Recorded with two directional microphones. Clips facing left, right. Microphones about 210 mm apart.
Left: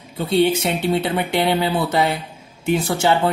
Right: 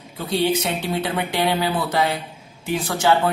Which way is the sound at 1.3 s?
25° left (ahead or behind).